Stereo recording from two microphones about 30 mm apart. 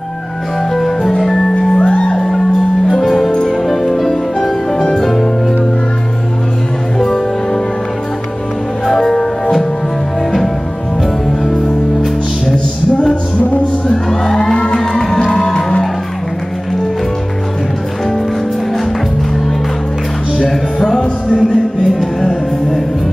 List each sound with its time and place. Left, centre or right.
0.7 s music: centre
1.8 s music: left
2.1 s music: centre
7.0 s music: centre
8.8 s music: centre
11.4 s music: left
14.3 s music: left
15.0 s music: centre
15.3 s music: left
20.3 s music: centre